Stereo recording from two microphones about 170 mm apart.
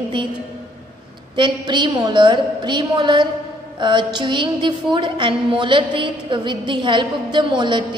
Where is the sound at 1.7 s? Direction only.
25° right (ahead or behind).